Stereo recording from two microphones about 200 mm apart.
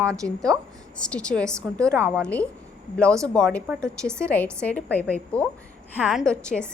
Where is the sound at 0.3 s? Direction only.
5° left (ahead or behind).